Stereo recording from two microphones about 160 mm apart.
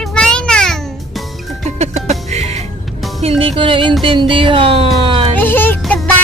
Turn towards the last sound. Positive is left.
turn(degrees=15)  # may be behind; listen again after turning